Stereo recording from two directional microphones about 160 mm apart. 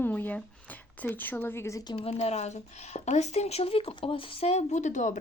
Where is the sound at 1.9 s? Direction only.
40° left (ahead or behind).